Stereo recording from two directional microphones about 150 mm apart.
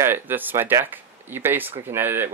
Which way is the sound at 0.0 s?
15° right (ahead or behind).